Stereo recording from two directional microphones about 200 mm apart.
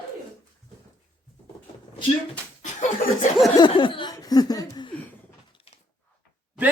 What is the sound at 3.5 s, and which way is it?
Chuckle, 25° left (ahead or behind).